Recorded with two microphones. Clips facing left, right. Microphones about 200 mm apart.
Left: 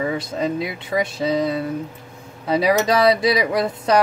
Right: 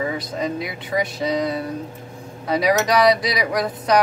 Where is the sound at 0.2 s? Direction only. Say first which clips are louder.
Left 2 dB; 25° left (ahead or behind).